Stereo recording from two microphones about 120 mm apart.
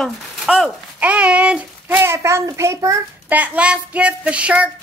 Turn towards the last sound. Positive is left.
turn(degrees=-10)  # may be behind; listen again after turning